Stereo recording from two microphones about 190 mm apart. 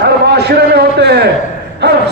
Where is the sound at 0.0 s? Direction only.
60° right (ahead or behind).